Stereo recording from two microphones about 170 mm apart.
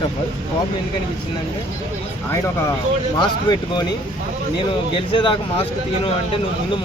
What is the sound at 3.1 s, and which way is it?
Speech, 25° left (ahead or behind).